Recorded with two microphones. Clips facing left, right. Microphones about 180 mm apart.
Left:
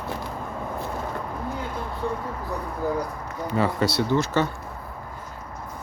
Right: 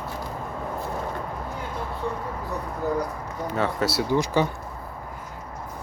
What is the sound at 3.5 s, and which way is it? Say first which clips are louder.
Speech: left 2 dB; centre (ahead or behind).